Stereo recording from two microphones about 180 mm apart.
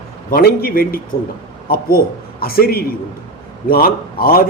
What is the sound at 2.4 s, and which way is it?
A man's voice, 55° left (ahead or behind).